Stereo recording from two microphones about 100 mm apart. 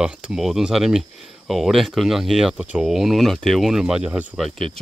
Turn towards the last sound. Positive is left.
turn(degrees=0)  # may be behind; listen again after turning